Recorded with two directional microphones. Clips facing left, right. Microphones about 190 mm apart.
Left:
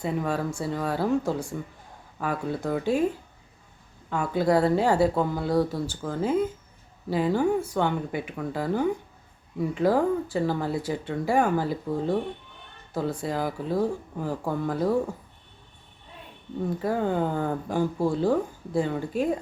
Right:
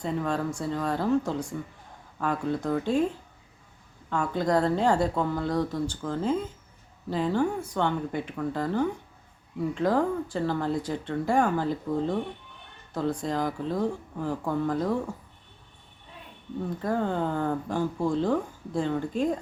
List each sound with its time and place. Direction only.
0.0 s speech: 10° left (ahead or behind)
4.1 s speech: 5° left (ahead or behind)
16.6 s speech: 10° left (ahead or behind)